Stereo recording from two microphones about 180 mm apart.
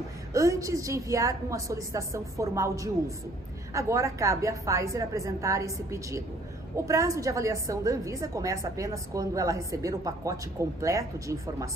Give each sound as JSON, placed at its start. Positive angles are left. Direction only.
{"t": 0.3, "sound": "a woman's voice", "side_deg": -15}